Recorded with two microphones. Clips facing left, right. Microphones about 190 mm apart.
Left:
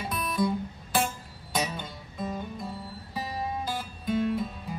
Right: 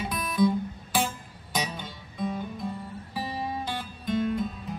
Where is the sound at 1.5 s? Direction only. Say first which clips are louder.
Left 1 dB; 5° left (ahead or behind).